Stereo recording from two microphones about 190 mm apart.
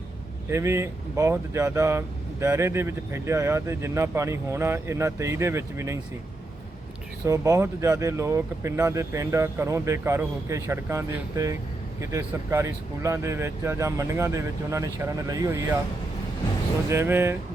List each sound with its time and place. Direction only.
0.5 s speech: 15° right (ahead or behind)
7.3 s speech: 15° right (ahead or behind)
16.9 s speech: 10° right (ahead or behind)